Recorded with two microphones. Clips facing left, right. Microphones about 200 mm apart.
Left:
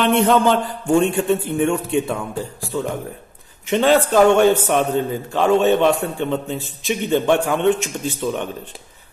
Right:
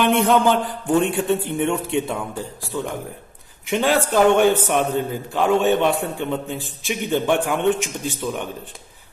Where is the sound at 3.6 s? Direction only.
10° right (ahead or behind).